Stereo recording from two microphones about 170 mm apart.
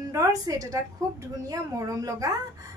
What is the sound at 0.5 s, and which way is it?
A woman's voice, 20° right (ahead or behind).